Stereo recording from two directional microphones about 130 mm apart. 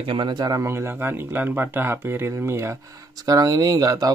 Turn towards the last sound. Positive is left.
turn(degrees=-30)  # may be behind; listen again after turning